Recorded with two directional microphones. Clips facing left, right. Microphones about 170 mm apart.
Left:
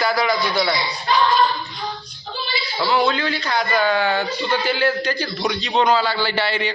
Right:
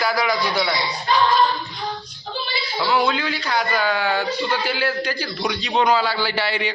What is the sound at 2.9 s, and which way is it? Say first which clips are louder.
A man's voice: left 1 dB; 10° right (ahead or behind).